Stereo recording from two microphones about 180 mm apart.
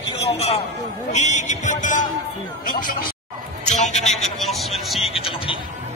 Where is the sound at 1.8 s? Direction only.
45° left (ahead or behind).